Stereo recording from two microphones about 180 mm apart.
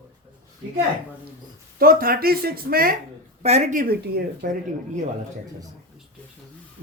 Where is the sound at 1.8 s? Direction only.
55° right (ahead or behind).